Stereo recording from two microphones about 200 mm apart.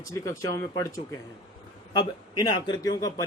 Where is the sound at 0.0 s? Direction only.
15° left (ahead or behind).